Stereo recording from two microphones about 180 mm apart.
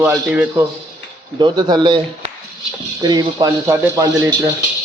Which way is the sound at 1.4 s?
25° right (ahead or behind).